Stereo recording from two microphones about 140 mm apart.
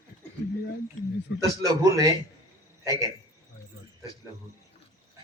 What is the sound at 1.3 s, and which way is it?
A man's voice, 25° right (ahead or behind).